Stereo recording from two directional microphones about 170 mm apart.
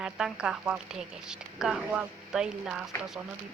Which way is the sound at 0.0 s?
5° right (ahead or behind).